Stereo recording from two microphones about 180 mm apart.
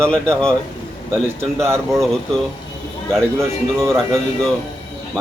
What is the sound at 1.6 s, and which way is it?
Speech, 15° right (ahead or behind).